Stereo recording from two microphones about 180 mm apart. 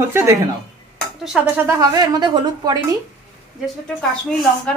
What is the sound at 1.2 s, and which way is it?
Speech, 5° right (ahead or behind).